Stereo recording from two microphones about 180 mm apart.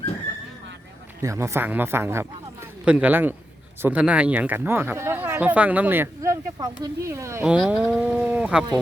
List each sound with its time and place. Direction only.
1.2 s speech: 15° right (ahead or behind)